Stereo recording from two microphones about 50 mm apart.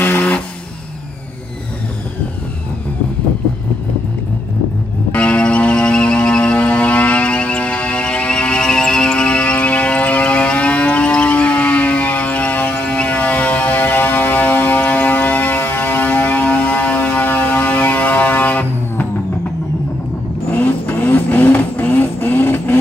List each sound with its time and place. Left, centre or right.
0.0 s vehicle: left
5.1 s music: left
12.8 s music: left
20.5 s vehicle: left